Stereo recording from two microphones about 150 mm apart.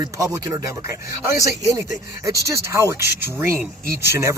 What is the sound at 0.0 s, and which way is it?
Speech, 20° right (ahead or behind).